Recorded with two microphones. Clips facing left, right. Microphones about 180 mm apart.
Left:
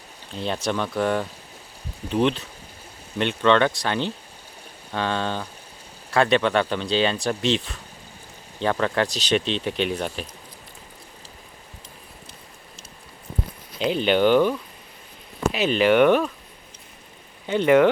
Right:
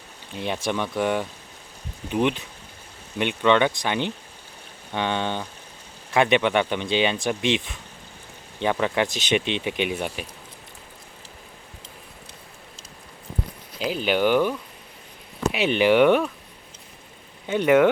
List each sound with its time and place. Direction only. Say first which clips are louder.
0.3 s speech: left 1 dB; 15° right (ahead or behind)
9.1 s speech: left 1 dB; 15° right (ahead or behind)
13.7 s speech: left 3 dB; 5° right (ahead or behind)
15.5 s speech: even; 15° right (ahead or behind)
17.5 s speech: left 1 dB; 10° right (ahead or behind)